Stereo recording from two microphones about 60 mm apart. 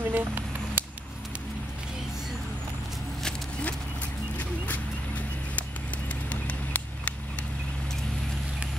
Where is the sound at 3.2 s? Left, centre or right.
Left.